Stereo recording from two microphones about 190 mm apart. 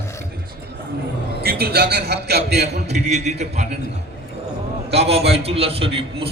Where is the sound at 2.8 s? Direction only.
35° right (ahead or behind).